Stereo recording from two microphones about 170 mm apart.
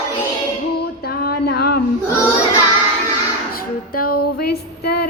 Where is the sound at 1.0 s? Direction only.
65° left (ahead or behind).